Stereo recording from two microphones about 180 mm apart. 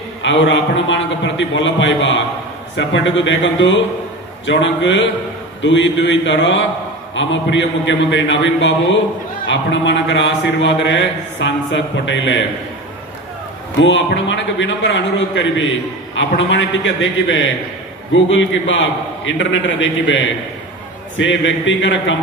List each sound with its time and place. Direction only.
0.2 s speech: 90° left
13.7 s speech: 90° left